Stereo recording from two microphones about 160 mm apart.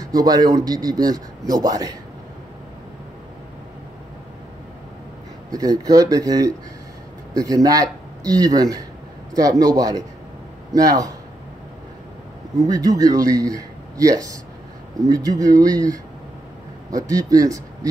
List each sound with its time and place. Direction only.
0.0 s speech: 25° right (ahead or behind)
5.5 s speech: 25° right (ahead or behind)
12.5 s speech: 25° right (ahead or behind)